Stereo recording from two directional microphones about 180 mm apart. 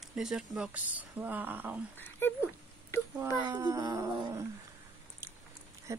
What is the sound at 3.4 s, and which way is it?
Speech, 20° right (ahead or behind).